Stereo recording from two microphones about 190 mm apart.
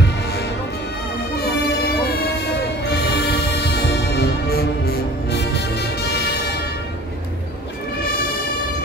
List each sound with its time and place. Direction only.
1.8 s music: 55° left (ahead or behind)